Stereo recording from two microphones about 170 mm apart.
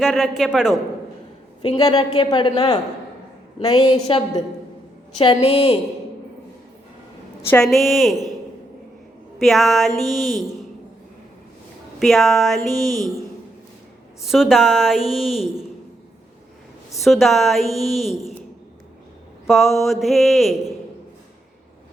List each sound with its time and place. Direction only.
0.0 s a woman's voice: centre (ahead or behind)
1.6 s a woman's voice: 25° left (ahead or behind)
3.8 s a woman's voice: 35° left (ahead or behind)
7.5 s a woman's voice: centre (ahead or behind)
9.4 s a woman's voice: centre (ahead or behind)
11.9 s a woman's voice: centre (ahead or behind)
14.2 s a woman's voice: centre (ahead or behind)
17.0 s a woman's voice: centre (ahead or behind)
19.5 s a woman's voice: centre (ahead or behind)